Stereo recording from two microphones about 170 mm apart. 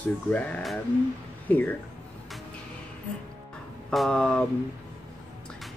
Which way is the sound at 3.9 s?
Centre (ahead or behind).